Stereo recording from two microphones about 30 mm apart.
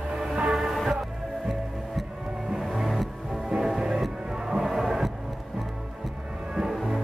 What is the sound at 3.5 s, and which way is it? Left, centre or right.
Music, centre.